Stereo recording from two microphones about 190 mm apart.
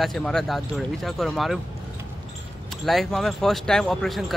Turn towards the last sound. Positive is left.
turn(degrees=0)  # may be behind; listen again after turning